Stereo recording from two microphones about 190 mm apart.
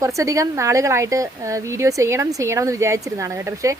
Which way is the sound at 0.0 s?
15° right (ahead or behind).